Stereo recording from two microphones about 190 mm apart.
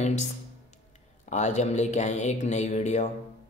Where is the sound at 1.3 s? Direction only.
40° left (ahead or behind).